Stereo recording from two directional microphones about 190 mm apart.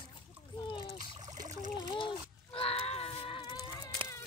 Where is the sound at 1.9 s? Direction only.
25° left (ahead or behind).